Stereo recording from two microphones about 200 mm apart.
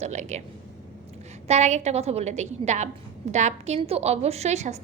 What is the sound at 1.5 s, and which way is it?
A woman's voice, 35° right (ahead or behind).